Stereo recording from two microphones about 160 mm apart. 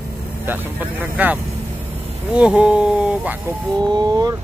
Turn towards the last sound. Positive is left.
turn(degrees=-25)  # may be behind; listen again after turning